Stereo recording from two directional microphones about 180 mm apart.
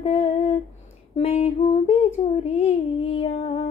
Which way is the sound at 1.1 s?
35° left (ahead or behind).